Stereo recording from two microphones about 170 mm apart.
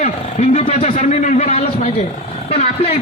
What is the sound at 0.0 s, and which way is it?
Speech, 40° left (ahead or behind).